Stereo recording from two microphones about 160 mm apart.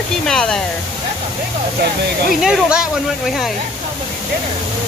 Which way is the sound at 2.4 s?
5° right (ahead or behind).